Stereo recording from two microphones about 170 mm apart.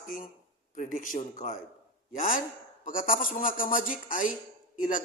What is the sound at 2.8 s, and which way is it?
A man's voice, 55° left (ahead or behind).